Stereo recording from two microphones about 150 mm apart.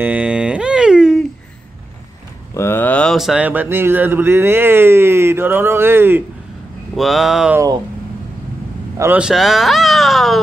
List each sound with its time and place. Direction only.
0.0 s a sound: 10° right (ahead or behind)
2.5 s speech: 15° left (ahead or behind); by 6.2 s 15° right (ahead or behind)
7.0 s a sound: centre (ahead or behind)
7.5 s speech: 25° right (ahead or behind)
8.9 s speech: 15° right (ahead or behind)
9.2 s speech: centre (ahead or behind)